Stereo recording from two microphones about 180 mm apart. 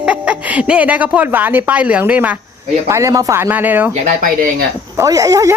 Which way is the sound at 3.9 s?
45° right (ahead or behind).